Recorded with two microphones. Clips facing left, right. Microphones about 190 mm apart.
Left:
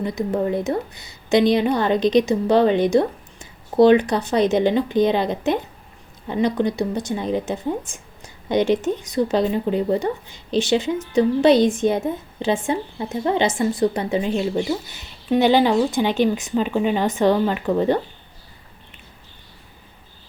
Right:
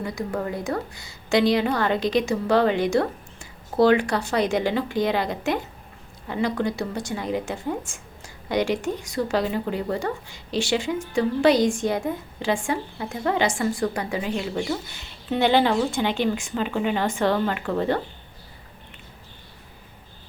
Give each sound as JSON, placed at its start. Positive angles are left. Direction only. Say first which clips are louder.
{"t": 0.0, "sound": "a woman's voice", "louder": "left 6 dB", "side_deg": 20}